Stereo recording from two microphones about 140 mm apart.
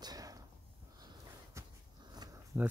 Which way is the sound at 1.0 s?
30° right (ahead or behind).